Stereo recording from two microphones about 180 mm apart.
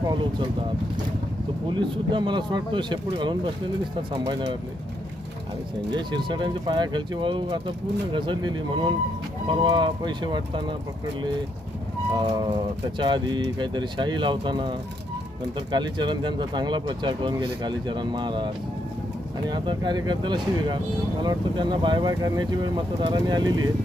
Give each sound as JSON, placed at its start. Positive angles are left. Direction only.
{"t": 0.0, "sound": "speech", "side_deg": -25}
{"t": 1.7, "sound": "speech", "side_deg": -25}
{"t": 5.9, "sound": "speech", "side_deg": -25}
{"t": 12.1, "sound": "speech", "side_deg": -25}